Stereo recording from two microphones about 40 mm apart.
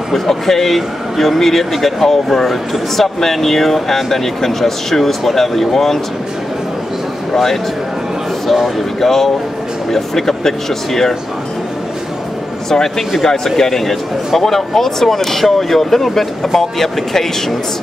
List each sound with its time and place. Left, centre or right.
0.1 s a man's voice: centre
8.5 s a man's voice: centre
9.0 s speech: centre
12.6 s speech: centre